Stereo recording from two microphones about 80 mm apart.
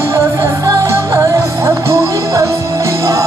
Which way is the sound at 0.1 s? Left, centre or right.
Right.